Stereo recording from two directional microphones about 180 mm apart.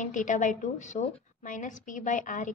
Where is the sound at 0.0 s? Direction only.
45° left (ahead or behind).